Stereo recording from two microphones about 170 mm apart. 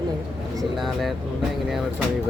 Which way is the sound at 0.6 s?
Centre (ahead or behind).